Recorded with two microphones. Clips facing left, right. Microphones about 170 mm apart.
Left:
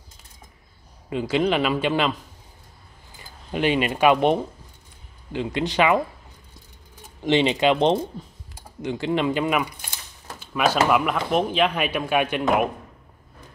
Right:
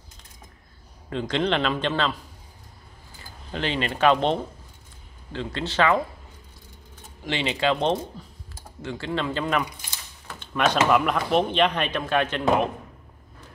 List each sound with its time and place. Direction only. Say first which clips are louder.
1.1 s speech: left 3 dB; 10° left (ahead or behind)
3.2 s speech: left 5 dB; 15° left (ahead or behind)
7.2 s speech: left 6 dB; 20° left (ahead or behind)